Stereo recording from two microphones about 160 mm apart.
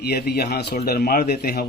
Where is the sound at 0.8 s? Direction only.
70° left (ahead or behind).